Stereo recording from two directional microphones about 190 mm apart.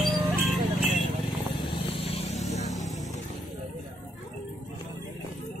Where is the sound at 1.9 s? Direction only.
30° left (ahead or behind).